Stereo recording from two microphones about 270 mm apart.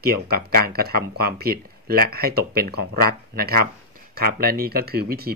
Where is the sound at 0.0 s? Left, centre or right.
Right.